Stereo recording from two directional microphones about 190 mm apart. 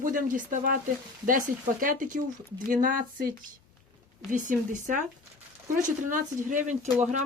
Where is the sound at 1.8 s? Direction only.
45° right (ahead or behind).